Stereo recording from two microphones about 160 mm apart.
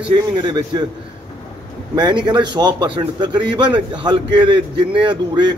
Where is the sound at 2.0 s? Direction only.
25° right (ahead or behind).